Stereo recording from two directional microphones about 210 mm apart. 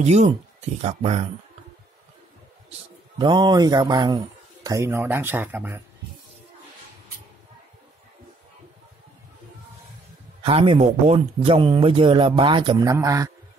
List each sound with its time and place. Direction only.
0.0 s speech: 35° right (ahead or behind)
3.2 s speech: 20° right (ahead or behind)
10.4 s speech: 25° right (ahead or behind)